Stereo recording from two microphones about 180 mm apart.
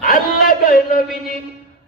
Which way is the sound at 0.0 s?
50° left (ahead or behind).